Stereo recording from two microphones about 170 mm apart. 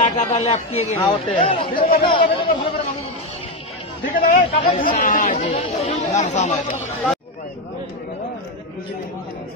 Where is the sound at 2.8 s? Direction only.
35° left (ahead or behind).